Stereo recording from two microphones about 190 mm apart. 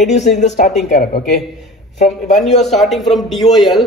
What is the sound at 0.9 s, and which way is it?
Speech, 55° left (ahead or behind).